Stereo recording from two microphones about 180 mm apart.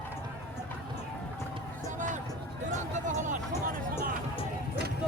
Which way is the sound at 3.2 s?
45° right (ahead or behind).